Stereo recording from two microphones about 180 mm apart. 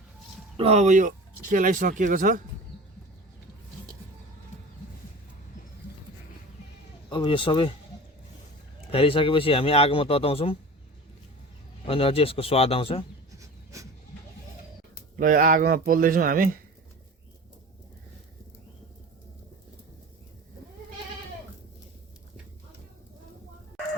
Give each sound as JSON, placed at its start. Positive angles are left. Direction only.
{"t": 0.5, "sound": "speech", "side_deg": -35}
{"t": 7.1, "sound": "speech", "side_deg": 25}
{"t": 8.9, "sound": "speech", "side_deg": 30}
{"t": 11.9, "sound": "speech", "side_deg": 30}
{"t": 13.4, "sound": "dog", "side_deg": -20}
{"t": 15.2, "sound": "speech", "side_deg": -50}